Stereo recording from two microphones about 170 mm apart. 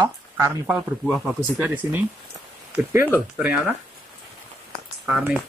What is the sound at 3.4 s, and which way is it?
Speech, 10° right (ahead or behind).